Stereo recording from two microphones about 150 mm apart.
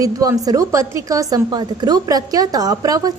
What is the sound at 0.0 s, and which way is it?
A woman's voice, 25° right (ahead or behind).